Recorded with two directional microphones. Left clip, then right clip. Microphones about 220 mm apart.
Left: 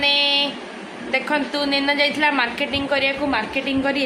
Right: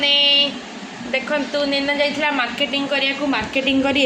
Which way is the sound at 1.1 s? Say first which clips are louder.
Even; 15° left (ahead or behind).